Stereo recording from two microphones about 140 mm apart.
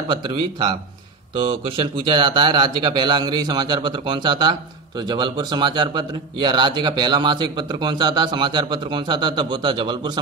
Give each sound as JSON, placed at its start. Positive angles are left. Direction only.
{"t": 0.1, "sound": "speech", "side_deg": -35}